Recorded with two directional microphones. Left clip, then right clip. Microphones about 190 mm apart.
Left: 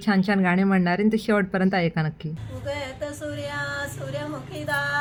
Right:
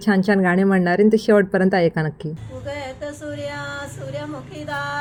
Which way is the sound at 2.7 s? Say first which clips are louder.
Right 1 dB; centre (ahead or behind).